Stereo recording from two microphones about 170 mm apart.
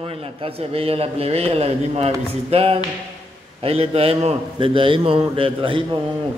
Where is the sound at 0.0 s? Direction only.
35° right (ahead or behind).